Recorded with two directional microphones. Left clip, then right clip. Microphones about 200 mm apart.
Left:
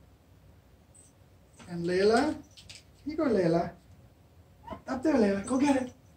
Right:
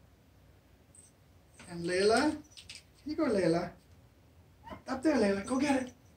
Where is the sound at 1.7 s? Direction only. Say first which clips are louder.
Left 3 dB; 20° right (ahead or behind).